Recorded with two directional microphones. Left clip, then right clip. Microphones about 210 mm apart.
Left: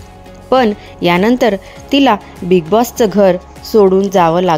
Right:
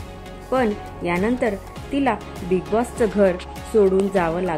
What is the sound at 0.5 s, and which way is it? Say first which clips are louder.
Speech: left 10 dB; 45° left (ahead or behind).